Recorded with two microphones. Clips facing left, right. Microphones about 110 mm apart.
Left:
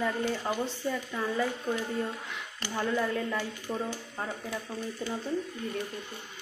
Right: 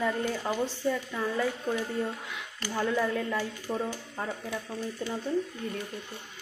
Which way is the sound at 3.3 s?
10° right (ahead or behind).